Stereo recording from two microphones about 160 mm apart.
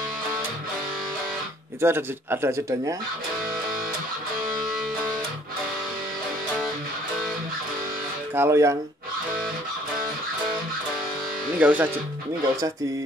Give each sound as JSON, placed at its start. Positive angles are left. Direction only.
{"t": 1.8, "sound": "speech", "side_deg": -15}
{"t": 8.4, "sound": "speech", "side_deg": -20}
{"t": 11.5, "sound": "speech", "side_deg": -10}